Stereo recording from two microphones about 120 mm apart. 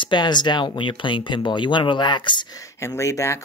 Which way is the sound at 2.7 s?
25° left (ahead or behind).